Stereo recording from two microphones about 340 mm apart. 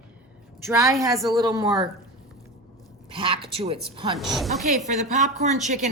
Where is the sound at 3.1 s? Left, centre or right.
Centre.